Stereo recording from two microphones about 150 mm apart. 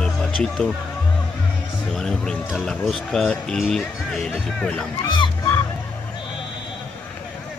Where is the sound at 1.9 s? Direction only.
5° left (ahead or behind).